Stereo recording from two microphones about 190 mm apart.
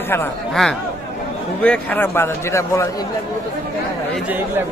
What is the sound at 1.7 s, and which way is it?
A man's voice, 10° left (ahead or behind).